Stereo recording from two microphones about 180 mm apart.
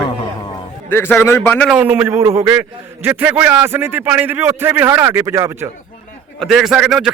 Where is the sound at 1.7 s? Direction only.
10° right (ahead or behind).